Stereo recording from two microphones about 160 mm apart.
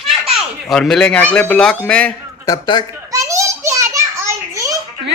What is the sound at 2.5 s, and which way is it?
Speech, 25° left (ahead or behind).